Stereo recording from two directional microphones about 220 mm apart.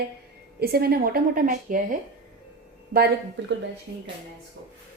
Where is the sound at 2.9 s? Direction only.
50° right (ahead or behind).